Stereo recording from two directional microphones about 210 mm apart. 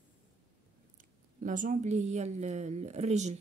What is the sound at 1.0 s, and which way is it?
A woman's voice, 40° right (ahead or behind).